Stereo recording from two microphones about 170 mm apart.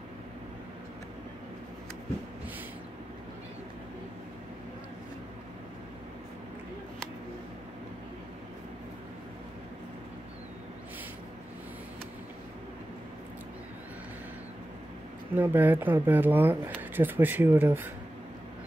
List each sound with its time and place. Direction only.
15.3 s speech: 10° right (ahead or behind)